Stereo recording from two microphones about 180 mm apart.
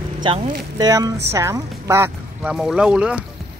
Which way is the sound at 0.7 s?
20° right (ahead or behind).